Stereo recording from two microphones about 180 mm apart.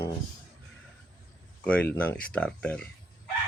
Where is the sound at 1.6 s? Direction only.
5° left (ahead or behind).